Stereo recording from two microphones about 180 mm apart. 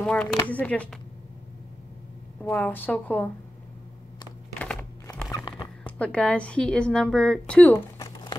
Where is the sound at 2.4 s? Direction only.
10° left (ahead or behind).